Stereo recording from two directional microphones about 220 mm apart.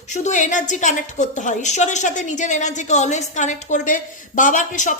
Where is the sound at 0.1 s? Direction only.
35° left (ahead or behind).